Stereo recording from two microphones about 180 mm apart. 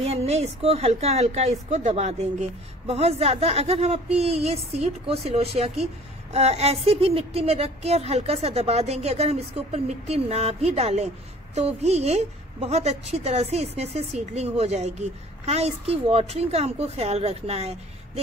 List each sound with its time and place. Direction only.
0.0 s a woman's voice: 35° right (ahead or behind)